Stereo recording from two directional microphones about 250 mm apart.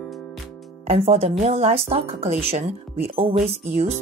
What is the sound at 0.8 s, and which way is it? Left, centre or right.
Speech, right.